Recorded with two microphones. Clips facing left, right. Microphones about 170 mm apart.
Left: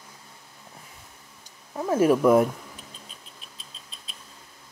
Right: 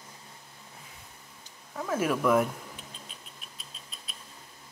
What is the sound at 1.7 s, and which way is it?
Speech, 35° left (ahead or behind).